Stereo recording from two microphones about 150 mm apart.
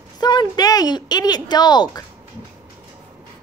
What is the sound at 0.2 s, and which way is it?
Speech, 30° left (ahead or behind).